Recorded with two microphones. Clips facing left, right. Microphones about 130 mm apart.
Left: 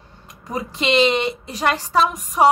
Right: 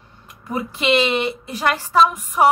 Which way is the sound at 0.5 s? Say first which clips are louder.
Right 2 dB; 30° left (ahead or behind).